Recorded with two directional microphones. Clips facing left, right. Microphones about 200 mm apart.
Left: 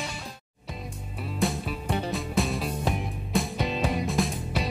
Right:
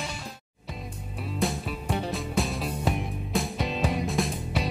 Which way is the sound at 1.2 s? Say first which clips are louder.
Left 1 dB; centre (ahead or behind).